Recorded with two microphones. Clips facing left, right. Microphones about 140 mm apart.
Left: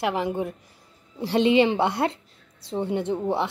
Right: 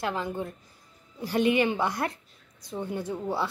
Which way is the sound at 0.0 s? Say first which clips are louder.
Left 5 dB; 20° left (ahead or behind).